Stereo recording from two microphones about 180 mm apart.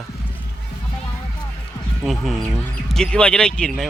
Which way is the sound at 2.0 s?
Centre (ahead or behind).